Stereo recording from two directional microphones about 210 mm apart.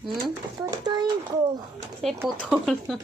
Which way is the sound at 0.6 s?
20° right (ahead or behind).